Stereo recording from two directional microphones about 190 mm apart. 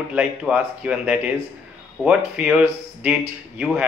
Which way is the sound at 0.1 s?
5° right (ahead or behind).